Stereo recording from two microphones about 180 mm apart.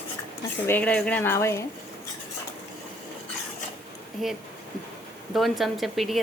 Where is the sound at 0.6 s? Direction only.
10° left (ahead or behind).